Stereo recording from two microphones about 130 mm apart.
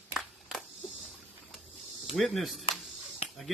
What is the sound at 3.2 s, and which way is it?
Finger snapping, 50° left (ahead or behind).